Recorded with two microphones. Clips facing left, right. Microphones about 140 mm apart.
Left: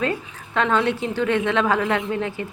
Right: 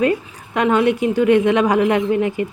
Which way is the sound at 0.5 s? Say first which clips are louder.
Right 5 dB; 15° right (ahead or behind).